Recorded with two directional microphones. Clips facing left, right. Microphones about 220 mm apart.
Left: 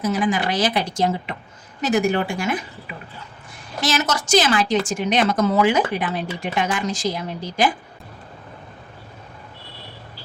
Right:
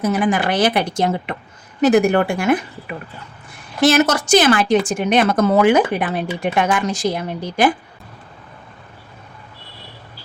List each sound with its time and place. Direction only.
0.0 s speech: 60° right (ahead or behind)